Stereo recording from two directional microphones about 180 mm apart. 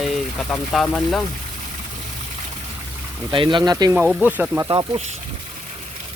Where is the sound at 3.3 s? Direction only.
25° right (ahead or behind).